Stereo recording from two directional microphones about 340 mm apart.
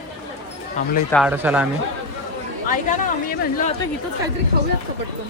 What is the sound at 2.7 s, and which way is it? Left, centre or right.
A woman's voice, left.